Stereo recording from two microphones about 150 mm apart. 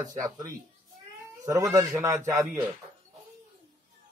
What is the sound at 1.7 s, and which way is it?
Speech, 20° right (ahead or behind).